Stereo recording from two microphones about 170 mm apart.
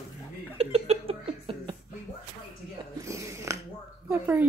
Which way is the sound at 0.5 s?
35° right (ahead or behind).